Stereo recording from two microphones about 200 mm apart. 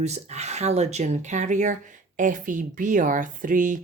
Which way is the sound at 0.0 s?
35° right (ahead or behind).